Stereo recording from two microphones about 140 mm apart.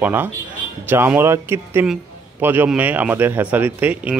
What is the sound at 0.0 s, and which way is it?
A man's voice, 15° right (ahead or behind).